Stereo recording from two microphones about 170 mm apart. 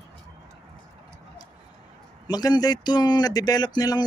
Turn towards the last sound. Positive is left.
turn(degrees=25)  # may be behind; listen again after turning